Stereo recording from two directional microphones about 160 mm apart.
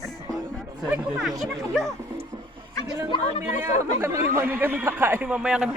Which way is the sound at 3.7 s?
15° right (ahead or behind).